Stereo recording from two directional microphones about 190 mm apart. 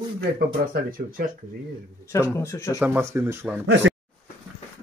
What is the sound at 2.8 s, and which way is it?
Speech, 10° right (ahead or behind).